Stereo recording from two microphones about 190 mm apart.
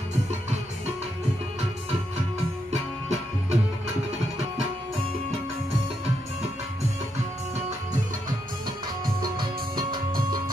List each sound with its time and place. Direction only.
2.7 s music: 35° right (ahead or behind)
9.8 s music: 25° right (ahead or behind)